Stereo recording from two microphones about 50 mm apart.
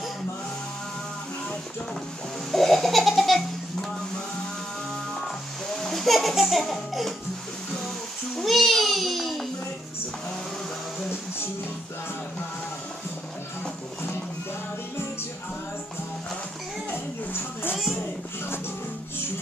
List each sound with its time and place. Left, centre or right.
2.5 s laughter: centre
5.7 s music: centre
8.4 s babbling: centre
16.9 s a sound: left